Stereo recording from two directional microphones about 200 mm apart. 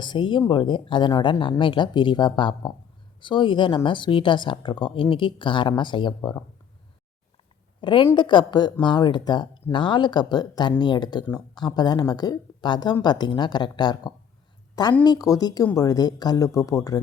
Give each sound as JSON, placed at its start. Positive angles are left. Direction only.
{"t": 0.0, "sound": "speech", "side_deg": 25}
{"t": 7.8, "sound": "speech", "side_deg": 25}